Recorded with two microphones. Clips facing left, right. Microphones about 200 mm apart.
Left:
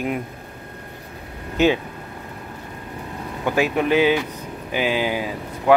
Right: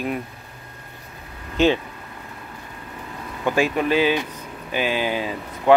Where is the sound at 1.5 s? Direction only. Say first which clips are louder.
Even; 10° left (ahead or behind).